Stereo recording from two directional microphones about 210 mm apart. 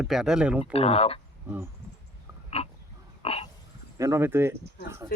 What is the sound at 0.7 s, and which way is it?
Speech, 30° left (ahead or behind).